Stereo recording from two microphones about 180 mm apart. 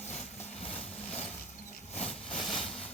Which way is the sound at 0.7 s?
5° left (ahead or behind).